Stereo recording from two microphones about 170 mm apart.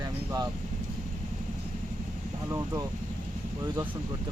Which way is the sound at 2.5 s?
15° right (ahead or behind).